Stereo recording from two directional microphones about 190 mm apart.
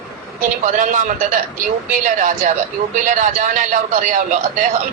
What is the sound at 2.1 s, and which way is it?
A man's voice, 40° right (ahead or behind).